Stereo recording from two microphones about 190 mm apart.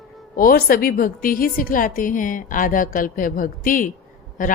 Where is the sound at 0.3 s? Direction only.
50° left (ahead or behind).